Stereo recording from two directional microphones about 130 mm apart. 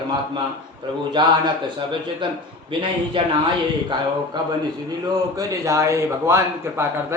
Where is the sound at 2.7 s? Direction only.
40° right (ahead or behind).